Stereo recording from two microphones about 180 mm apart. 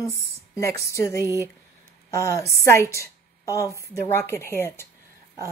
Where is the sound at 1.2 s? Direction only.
15° right (ahead or behind).